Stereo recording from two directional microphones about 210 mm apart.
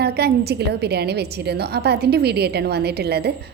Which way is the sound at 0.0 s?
50° right (ahead or behind).